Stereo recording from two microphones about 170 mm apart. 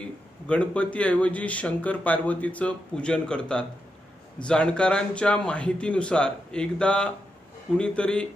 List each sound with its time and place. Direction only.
0.5 s a man's voice: 5° left (ahead or behind)